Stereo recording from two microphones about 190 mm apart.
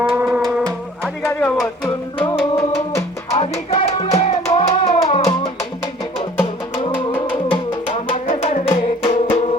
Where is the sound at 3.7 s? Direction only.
35° left (ahead or behind).